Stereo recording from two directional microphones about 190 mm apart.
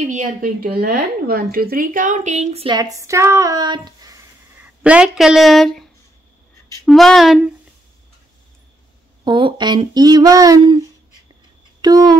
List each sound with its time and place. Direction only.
0.0 s a woman's voice: 40° right (ahead or behind); by 4.2 s 20° right (ahead or behind)
4.8 s speech: 5° right (ahead or behind)
6.9 s speech: centre (ahead or behind)
9.2 s speech: 25° right (ahead or behind)
11.8 s speech: 20° right (ahead or behind)